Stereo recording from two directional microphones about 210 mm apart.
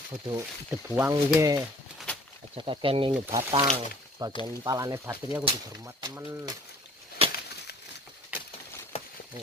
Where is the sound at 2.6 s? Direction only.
25° right (ahead or behind).